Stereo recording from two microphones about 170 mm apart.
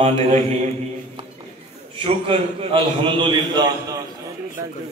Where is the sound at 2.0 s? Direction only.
35° right (ahead or behind).